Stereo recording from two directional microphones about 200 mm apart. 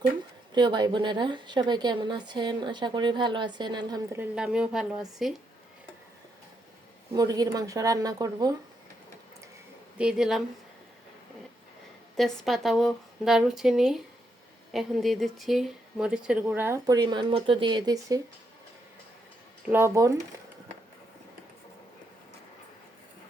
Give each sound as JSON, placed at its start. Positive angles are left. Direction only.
{"t": 0.5, "sound": "a woman's voice", "side_deg": -20}
{"t": 4.2, "sound": "a woman's voice", "side_deg": -5}
{"t": 7.1, "sound": "speech", "side_deg": -20}
{"t": 10.0, "sound": "a woman's voice", "side_deg": -5}
{"t": 12.1, "sound": "a woman's voice", "side_deg": 0}
{"t": 19.6, "sound": "speech", "side_deg": -10}